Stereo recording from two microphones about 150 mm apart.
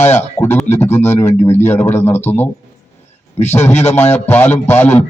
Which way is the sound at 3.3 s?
45° left (ahead or behind).